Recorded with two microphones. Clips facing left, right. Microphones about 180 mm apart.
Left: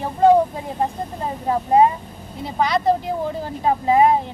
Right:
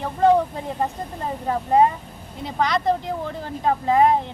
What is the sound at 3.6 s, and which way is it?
Speech, 15° left (ahead or behind).